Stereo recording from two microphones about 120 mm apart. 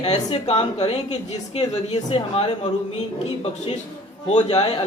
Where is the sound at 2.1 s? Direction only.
55° left (ahead or behind).